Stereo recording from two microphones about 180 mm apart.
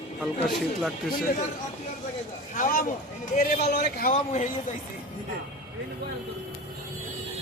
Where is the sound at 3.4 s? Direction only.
65° left (ahead or behind); by 4.4 s 45° left (ahead or behind).